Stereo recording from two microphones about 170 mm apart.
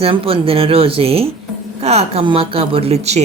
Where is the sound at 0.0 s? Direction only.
35° right (ahead or behind).